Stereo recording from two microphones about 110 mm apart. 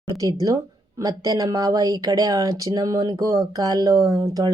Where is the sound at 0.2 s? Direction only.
35° right (ahead or behind).